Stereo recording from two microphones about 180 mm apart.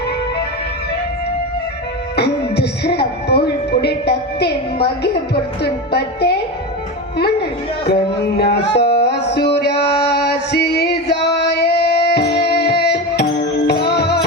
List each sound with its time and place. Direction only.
2.1 s a woman's voice: 65° left (ahead or behind)
8.4 s music: 65° left (ahead or behind)